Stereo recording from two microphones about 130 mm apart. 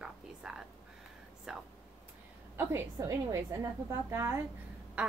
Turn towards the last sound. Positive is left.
turn(degrees=-10)  # may be behind; listen again after turning